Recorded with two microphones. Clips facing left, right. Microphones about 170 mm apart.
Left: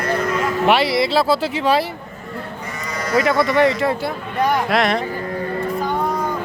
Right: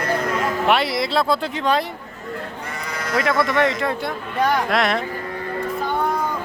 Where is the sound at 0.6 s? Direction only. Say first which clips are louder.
Left 5 dB; centre (ahead or behind).